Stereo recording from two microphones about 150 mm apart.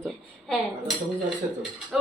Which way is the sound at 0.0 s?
Centre (ahead or behind).